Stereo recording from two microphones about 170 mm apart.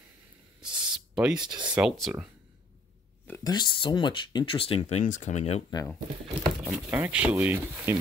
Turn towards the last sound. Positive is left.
turn(degrees=-10)  # may be behind; listen again after turning